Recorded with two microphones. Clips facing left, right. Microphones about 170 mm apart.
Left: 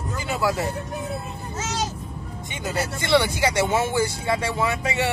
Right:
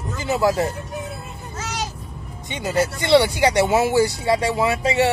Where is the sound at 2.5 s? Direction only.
15° right (ahead or behind).